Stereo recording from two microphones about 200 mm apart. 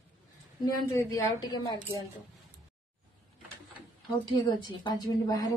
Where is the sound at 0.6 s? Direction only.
20° left (ahead or behind).